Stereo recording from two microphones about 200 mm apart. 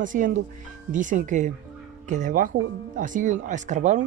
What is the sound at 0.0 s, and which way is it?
Speech, 40° right (ahead or behind).